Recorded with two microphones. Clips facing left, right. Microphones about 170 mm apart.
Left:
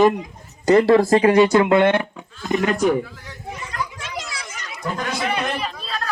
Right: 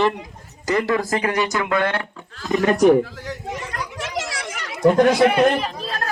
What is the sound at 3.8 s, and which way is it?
Chatter, 75° right (ahead or behind).